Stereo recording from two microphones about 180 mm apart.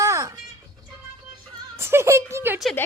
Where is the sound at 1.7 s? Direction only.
15° right (ahead or behind).